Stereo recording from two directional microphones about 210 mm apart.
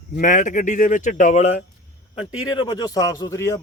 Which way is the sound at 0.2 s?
40° left (ahead or behind).